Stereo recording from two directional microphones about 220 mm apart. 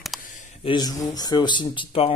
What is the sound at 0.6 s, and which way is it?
Speech, 20° left (ahead or behind).